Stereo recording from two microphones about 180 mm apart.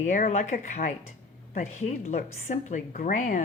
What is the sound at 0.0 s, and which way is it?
A woman's voice, 45° left (ahead or behind).